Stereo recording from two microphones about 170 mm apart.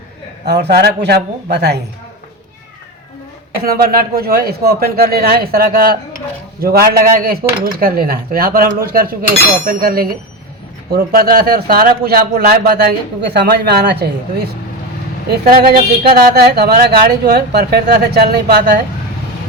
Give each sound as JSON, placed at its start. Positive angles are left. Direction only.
{"t": 0.4, "sound": "speech", "side_deg": -75}
{"t": 3.6, "sound": "speech", "side_deg": -60}